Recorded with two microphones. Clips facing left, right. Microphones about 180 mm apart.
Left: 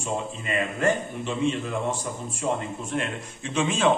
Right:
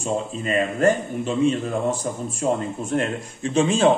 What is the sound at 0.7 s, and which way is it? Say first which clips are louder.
Speech: right 4 dB; 45° right (ahead or behind).